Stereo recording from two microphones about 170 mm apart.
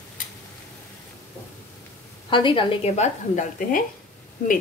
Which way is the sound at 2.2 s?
30° left (ahead or behind).